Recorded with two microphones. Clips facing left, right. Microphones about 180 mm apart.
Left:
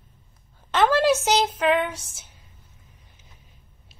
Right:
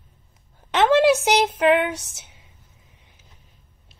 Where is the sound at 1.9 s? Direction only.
75° right (ahead or behind).